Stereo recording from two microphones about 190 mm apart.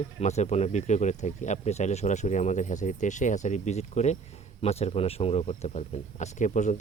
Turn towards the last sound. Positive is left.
turn(degrees=40)  # may be behind; listen again after turning